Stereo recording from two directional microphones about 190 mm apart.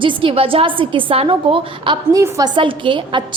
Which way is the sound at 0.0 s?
25° right (ahead or behind).